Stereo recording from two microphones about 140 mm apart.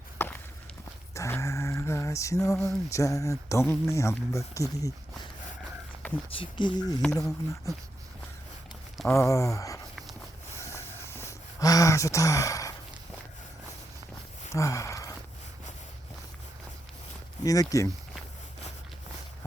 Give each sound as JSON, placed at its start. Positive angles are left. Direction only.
{"t": 0.2, "sound": "walk", "side_deg": 15}
{"t": 1.1, "sound": "lullaby", "side_deg": 20}
{"t": 2.9, "sound": "speech", "side_deg": 20}
{"t": 6.3, "sound": "speech", "side_deg": 35}
{"t": 9.0, "sound": "speech", "side_deg": 20}
{"t": 10.6, "sound": "a sound", "side_deg": 20}
{"t": 14.5, "sound": "a sound", "side_deg": 25}
{"t": 17.4, "sound": "speech", "side_deg": 25}